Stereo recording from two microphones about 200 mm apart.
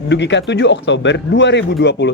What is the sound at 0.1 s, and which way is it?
Speech, 60° left (ahead or behind).